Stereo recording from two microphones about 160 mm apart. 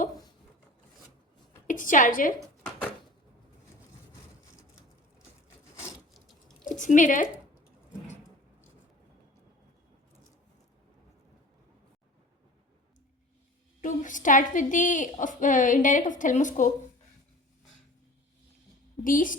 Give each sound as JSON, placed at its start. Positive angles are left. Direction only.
{"t": 1.6, "sound": "a woman's voice", "side_deg": 55}
{"t": 6.1, "sound": "a sound", "side_deg": 0}
{"t": 6.7, "sound": "a woman's voice", "side_deg": 55}
{"t": 13.8, "sound": "a woman's voice", "side_deg": 55}
{"t": 19.0, "sound": "a woman's voice", "side_deg": 60}